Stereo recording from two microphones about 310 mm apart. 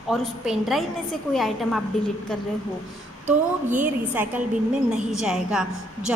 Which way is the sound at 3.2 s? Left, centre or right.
Right.